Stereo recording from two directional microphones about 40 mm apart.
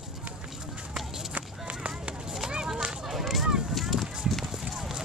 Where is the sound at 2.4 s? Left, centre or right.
Right.